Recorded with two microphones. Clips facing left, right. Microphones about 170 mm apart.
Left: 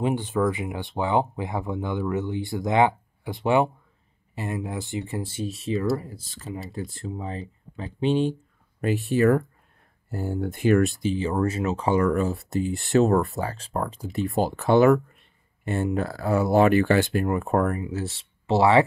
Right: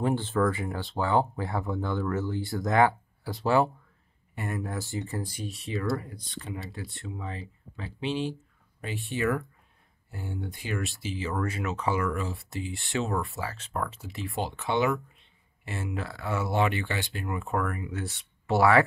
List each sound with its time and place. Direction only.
0.0 s speech: 15° left (ahead or behind); by 5.8 s 30° left (ahead or behind)
6.0 s speech: 5° left (ahead or behind)
7.0 s speech: 35° left (ahead or behind)
10.5 s speech: 55° left (ahead or behind)
11.1 s speech: 30° left (ahead or behind)
14.6 s speech: 45° left (ahead or behind); by 18.9 s 25° left (ahead or behind)